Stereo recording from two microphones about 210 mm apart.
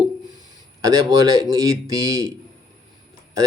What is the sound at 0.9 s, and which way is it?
Speech, 15° right (ahead or behind).